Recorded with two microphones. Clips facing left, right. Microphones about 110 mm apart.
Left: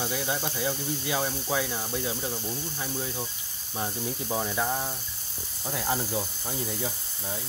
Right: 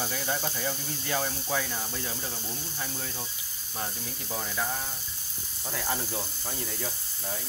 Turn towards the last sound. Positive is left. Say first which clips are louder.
# left 1 dB
turn(degrees=10)  # may be behind; listen again after turning